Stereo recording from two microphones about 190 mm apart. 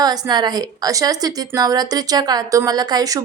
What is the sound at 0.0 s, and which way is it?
Speech, 20° right (ahead or behind).